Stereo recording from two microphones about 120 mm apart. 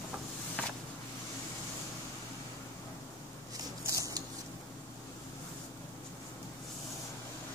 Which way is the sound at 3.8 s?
25° right (ahead or behind).